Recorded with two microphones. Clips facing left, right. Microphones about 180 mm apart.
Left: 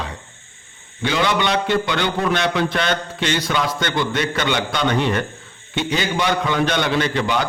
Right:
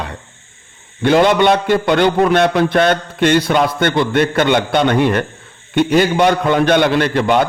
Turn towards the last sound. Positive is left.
turn(degrees=-55)  # may be behind; listen again after turning